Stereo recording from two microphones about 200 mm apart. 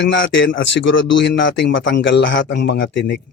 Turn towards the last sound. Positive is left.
turn(degrees=60)  # may be behind; listen again after turning